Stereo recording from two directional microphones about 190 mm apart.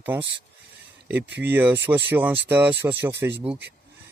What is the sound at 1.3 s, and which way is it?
Speech, 65° right (ahead or behind).